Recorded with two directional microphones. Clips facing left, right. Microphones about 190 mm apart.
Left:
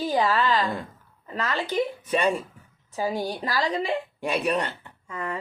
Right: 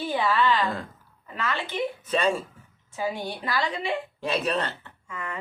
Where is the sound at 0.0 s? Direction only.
40° left (ahead or behind).